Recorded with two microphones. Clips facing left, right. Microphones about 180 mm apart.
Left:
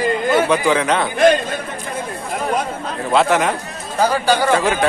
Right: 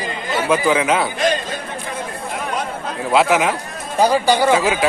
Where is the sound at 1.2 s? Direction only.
55° left (ahead or behind).